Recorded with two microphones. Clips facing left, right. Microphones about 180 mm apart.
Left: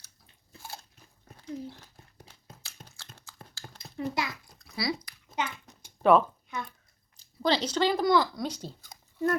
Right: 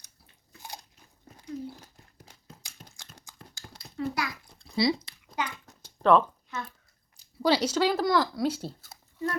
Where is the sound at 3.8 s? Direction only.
20° left (ahead or behind).